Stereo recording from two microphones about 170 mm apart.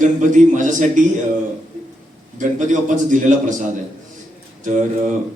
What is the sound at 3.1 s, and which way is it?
Speech, 45° right (ahead or behind).